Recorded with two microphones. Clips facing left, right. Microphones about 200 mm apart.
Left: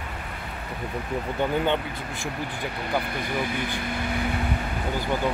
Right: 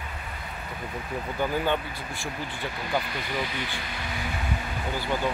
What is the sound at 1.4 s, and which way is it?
Speech, 20° left (ahead or behind).